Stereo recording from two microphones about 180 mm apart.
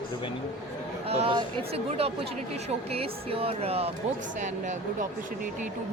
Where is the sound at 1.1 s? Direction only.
30° right (ahead or behind).